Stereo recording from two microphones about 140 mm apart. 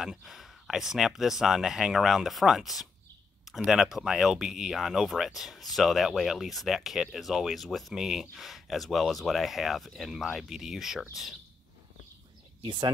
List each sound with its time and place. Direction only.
0.0 s speech: centre (ahead or behind)
12.6 s speech: 35° right (ahead or behind)